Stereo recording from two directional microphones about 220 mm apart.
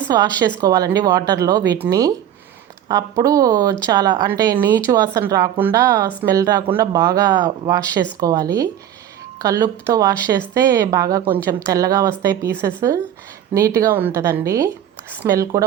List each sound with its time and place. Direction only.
0.1 s a woman's voice: 15° right (ahead or behind)